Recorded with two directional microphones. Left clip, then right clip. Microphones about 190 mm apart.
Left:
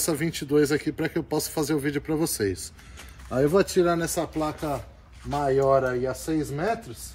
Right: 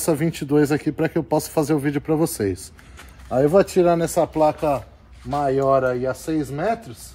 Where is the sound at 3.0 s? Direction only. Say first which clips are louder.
Right 5 dB; 15° right (ahead or behind).